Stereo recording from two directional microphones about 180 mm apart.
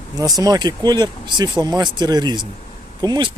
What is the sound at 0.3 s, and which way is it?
Speech, 20° right (ahead or behind).